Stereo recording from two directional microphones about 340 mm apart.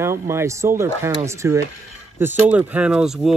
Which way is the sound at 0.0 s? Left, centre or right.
Centre.